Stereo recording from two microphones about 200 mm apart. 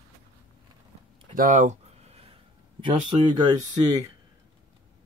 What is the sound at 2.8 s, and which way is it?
Speech, 20° right (ahead or behind).